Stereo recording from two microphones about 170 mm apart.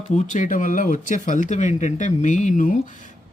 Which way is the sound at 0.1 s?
45° left (ahead or behind).